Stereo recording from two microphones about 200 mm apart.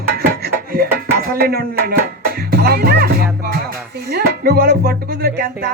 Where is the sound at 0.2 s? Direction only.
50° right (ahead or behind).